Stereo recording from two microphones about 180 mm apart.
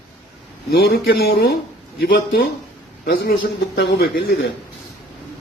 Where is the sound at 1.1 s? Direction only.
60° left (ahead or behind).